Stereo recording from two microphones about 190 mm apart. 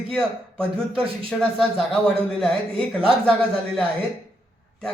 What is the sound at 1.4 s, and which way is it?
Speech, 5° left (ahead or behind).